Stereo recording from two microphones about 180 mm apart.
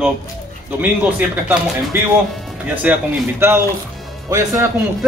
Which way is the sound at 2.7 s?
10° right (ahead or behind).